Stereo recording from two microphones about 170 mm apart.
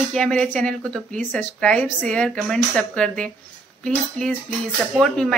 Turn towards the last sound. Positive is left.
turn(degrees=5)  # may be behind; listen again after turning